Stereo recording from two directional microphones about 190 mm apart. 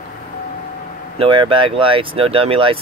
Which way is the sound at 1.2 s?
25° right (ahead or behind).